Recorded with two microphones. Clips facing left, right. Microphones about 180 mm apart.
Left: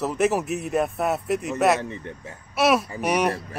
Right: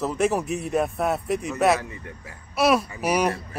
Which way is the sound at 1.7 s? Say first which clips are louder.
Left 3 dB; 25° left (ahead or behind).